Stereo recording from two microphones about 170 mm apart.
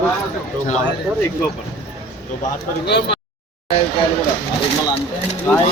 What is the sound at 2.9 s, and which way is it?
Speech, 80° left.